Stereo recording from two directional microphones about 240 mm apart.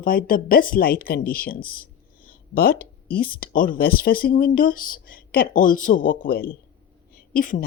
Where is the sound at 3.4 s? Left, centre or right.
Left.